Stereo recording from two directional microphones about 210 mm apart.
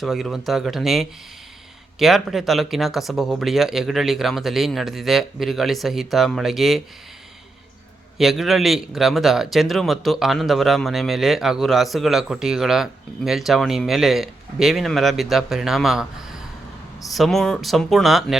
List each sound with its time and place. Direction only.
0.0 s speech: centre (ahead or behind)
8.2 s speech: centre (ahead or behind)